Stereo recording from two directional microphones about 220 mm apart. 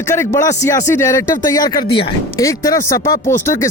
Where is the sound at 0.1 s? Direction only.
15° left (ahead or behind).